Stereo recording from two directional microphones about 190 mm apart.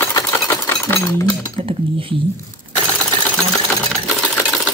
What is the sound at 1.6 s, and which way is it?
Speech, 30° right (ahead or behind).